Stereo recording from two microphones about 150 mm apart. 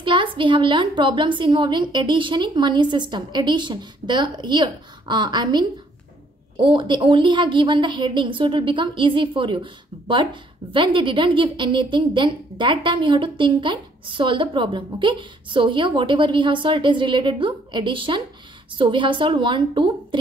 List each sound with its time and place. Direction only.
0.0 s a woman's voice: 35° right (ahead or behind)